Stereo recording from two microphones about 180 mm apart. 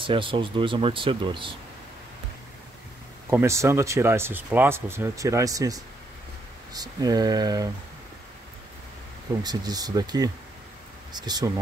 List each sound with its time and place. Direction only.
0.0 s speech: 30° right (ahead or behind)
3.3 s speech: 15° right (ahead or behind)
9.4 s speech: 20° right (ahead or behind)